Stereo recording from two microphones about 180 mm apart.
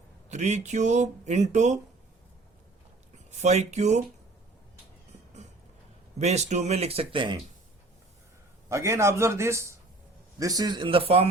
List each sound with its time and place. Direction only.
0.3 s speech: 40° right (ahead or behind)
3.3 s speech: 40° right (ahead or behind)
6.1 s speech: 40° right (ahead or behind)
8.7 s a man's voice: 15° right (ahead or behind); by 11.3 s 35° right (ahead or behind)